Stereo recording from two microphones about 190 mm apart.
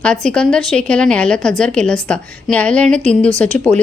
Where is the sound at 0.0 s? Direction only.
5° left (ahead or behind).